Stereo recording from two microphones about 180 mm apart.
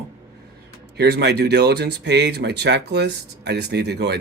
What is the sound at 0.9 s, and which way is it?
Speech, 70° right (ahead or behind).